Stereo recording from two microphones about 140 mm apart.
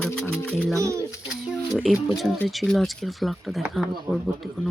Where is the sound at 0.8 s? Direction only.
20° right (ahead or behind).